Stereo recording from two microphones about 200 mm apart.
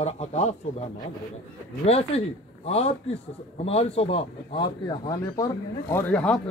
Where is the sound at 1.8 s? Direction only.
30° left (ahead or behind).